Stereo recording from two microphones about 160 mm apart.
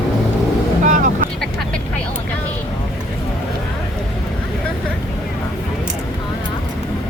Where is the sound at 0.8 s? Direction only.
55° right (ahead or behind).